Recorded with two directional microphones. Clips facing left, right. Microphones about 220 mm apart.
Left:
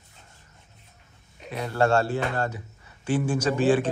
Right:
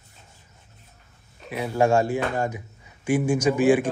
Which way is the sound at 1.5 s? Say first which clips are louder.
Right 2 dB; 10° right (ahead or behind).